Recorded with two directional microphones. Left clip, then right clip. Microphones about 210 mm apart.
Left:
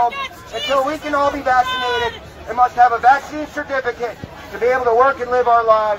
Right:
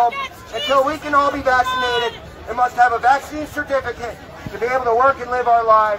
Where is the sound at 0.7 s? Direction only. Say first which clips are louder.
Right 2 dB; 25° right (ahead or behind).